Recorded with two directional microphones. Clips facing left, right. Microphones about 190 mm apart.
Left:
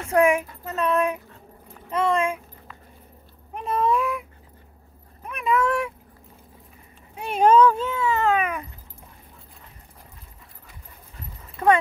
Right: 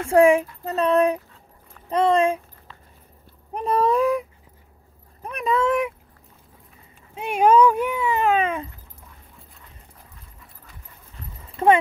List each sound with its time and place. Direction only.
0.0 s speech: 30° right (ahead or behind)
1.9 s a sound: 35° right (ahead or behind)
3.5 s speech: 35° right (ahead or behind)
5.2 s vehicle: 35° right (ahead or behind)
5.6 s speech: 20° right (ahead or behind)
7.2 s speech: 10° right (ahead or behind)
11.6 s speech: 30° right (ahead or behind)